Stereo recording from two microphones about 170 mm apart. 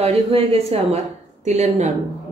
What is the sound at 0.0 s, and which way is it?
Speech, 35° right (ahead or behind).